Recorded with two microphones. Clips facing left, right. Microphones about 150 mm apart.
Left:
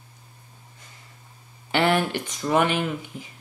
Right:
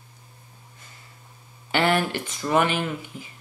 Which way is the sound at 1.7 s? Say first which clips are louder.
Left 1 dB; 5° right (ahead or behind).